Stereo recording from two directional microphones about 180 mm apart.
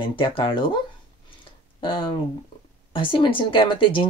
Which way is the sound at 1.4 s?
30° left (ahead or behind).